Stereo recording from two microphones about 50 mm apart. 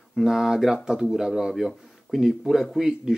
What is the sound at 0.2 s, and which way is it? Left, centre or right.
Speech, centre.